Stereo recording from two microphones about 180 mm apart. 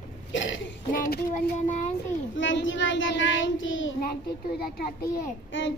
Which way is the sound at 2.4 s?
90° left.